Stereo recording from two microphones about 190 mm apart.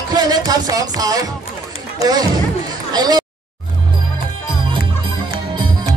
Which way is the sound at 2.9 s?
20° right (ahead or behind).